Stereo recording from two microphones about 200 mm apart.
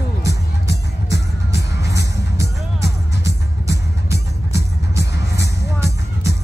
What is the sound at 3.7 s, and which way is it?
Music, 55° left (ahead or behind).